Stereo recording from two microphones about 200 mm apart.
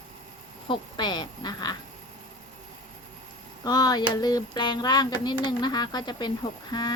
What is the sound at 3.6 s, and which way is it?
Speech, 20° left (ahead or behind).